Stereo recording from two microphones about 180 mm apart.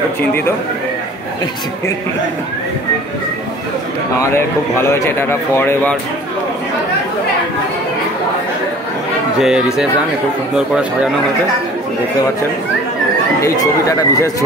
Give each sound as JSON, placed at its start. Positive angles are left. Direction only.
{"t": 4.2, "sound": "speech", "side_deg": 15}
{"t": 9.4, "sound": "speech", "side_deg": -5}
{"t": 13.4, "sound": "speech", "side_deg": 15}